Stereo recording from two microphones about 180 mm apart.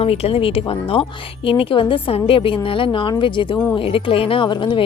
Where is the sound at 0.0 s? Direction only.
35° left (ahead or behind).